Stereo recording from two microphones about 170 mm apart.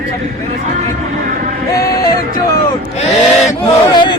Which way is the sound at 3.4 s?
25° left (ahead or behind).